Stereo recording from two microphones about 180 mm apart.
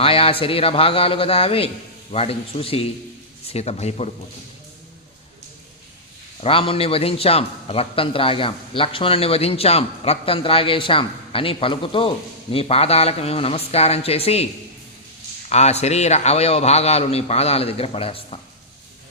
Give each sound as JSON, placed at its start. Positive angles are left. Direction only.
{"t": 0.0, "sound": "a man's voice", "side_deg": 30}
{"t": 6.4, "sound": "a man's voice", "side_deg": 30}
{"t": 15.4, "sound": "a man's voice", "side_deg": 35}